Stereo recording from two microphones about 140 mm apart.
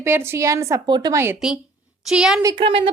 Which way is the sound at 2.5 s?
40° right (ahead or behind).